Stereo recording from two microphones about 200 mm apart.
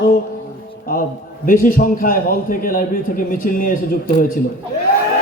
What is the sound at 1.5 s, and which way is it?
A man's voice, 45° left (ahead or behind).